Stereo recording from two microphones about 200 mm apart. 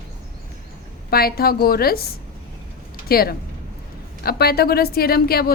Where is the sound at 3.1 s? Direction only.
50° left (ahead or behind).